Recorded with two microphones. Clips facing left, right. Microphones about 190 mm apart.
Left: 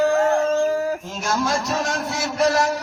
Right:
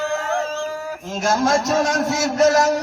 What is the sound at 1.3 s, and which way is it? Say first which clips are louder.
A man's voice: right 4 dB; 45° right (ahead or behind).